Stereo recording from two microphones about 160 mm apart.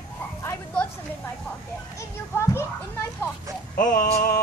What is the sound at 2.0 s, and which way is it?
Speech, 20° left (ahead or behind).